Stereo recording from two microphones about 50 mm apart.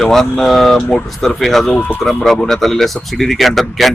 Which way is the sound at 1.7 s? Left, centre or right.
Left.